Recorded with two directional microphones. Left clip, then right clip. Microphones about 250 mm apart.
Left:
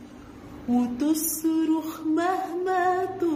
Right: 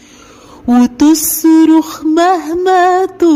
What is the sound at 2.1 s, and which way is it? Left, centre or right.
Music, right.